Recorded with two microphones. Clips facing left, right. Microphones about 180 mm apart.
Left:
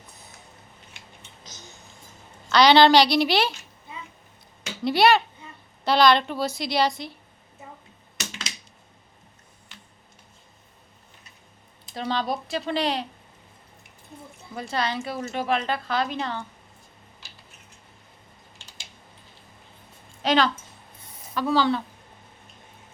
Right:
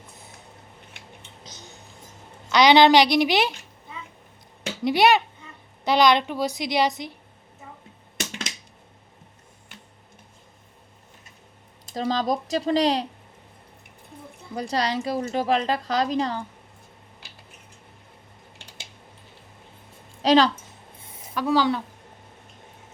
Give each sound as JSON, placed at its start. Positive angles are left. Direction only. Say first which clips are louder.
{"t": 2.5, "sound": "a woman's voice", "louder": "right 1 dB", "side_deg": -15}
{"t": 4.8, "sound": "a woman's voice", "louder": "even", "side_deg": -15}
{"t": 11.9, "sound": "a woman's voice", "louder": "right 3 dB", "side_deg": -40}
{"t": 14.5, "sound": "a woman's voice", "louder": "right 3 dB", "side_deg": -35}
{"t": 17.2, "sound": "tick-tock", "louder": "right 1 dB", "side_deg": -60}
{"t": 20.2, "sound": "a woman's voice", "louder": "right 4 dB", "side_deg": -35}
{"t": 21.3, "sound": "a woman's voice", "louder": "right 1 dB", "side_deg": -10}